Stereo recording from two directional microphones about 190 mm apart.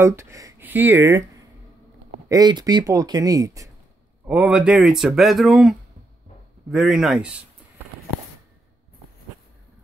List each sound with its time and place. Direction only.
0.0 s speech: 15° right (ahead or behind)
2.2 s speech: 20° right (ahead or behind)
4.3 s speech: 5° right (ahead or behind)